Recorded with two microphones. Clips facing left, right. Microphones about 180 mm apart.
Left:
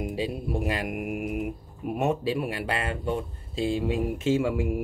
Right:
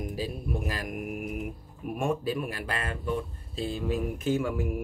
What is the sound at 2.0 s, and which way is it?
Speech, 25° left (ahead or behind).